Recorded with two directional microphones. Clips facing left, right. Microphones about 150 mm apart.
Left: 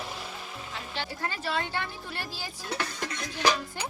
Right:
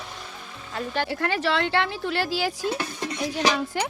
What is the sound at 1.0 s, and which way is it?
Speech, 75° right (ahead or behind).